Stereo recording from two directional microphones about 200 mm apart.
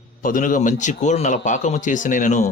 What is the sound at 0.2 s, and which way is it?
A man's voice, 45° left (ahead or behind).